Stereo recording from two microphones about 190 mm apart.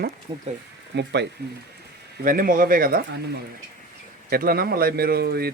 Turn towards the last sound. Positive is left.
turn(degrees=-55)  # may be behind; listen again after turning